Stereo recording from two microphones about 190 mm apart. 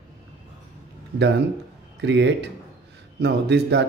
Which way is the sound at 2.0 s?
65° right (ahead or behind).